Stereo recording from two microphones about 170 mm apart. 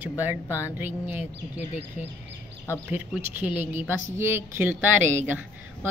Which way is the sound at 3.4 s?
10° right (ahead or behind).